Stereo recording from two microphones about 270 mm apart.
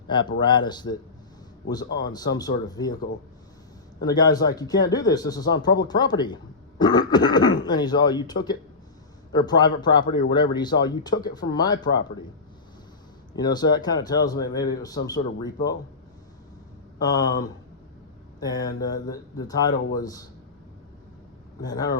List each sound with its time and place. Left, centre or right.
0.1 s speech: centre
2.4 s speech: centre
4.0 s speech: centre
13.3 s speech: centre
17.0 s speech: centre
21.6 s speech: centre